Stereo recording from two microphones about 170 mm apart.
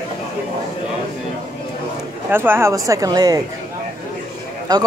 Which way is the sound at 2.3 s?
15° right (ahead or behind).